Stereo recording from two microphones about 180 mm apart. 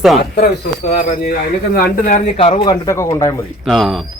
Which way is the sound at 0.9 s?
50° left (ahead or behind).